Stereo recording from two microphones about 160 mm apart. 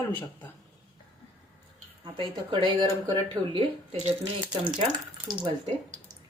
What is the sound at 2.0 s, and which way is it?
A woman's voice, 30° right (ahead or behind).